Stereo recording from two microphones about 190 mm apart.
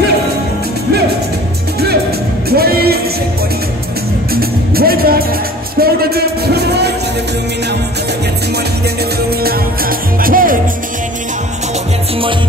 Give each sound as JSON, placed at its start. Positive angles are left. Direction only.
{"t": 2.5, "sound": "music", "side_deg": -55}
{"t": 4.3, "sound": "music", "side_deg": -55}
{"t": 5.8, "sound": "a sound", "side_deg": -55}
{"t": 9.4, "sound": "music", "side_deg": -50}